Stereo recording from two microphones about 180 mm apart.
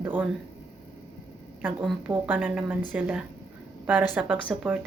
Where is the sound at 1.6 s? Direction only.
5° right (ahead or behind).